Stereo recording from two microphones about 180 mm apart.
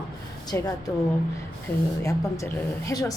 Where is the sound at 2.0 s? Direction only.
15° left (ahead or behind).